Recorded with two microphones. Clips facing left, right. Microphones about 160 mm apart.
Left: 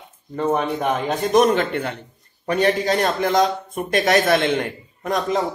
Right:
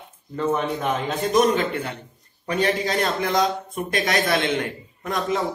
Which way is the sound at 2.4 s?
45° left (ahead or behind).